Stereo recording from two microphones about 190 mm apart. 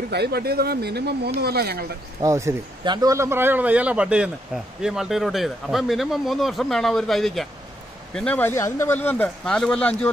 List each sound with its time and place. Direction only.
0.1 s speech: 60° right (ahead or behind)
2.2 s speech: 15° right (ahead or behind); by 10.1 s 5° left (ahead or behind)